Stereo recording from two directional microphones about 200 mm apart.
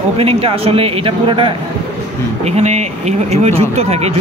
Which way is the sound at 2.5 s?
35° right (ahead or behind).